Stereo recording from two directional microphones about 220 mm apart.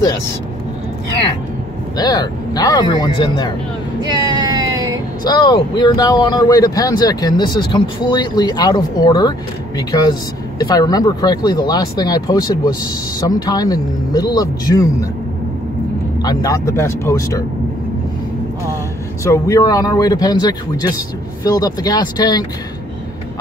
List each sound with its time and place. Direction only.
2.0 s speech: 15° left (ahead or behind)
4.0 s a sound: 20° right (ahead or behind)
5.2 s speech: 20° left (ahead or behind)
16.2 s speech: 15° left (ahead or behind)
19.2 s speech: 15° left (ahead or behind)